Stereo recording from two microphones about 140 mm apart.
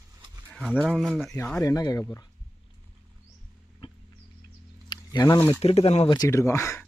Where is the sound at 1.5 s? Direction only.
25° left (ahead or behind).